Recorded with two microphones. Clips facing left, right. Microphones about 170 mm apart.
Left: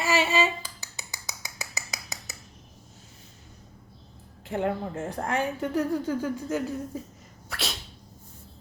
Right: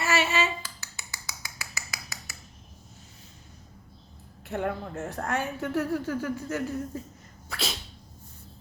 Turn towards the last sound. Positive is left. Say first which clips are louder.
# right 1 dB
turn(degrees=0)  # may be behind; listen again after turning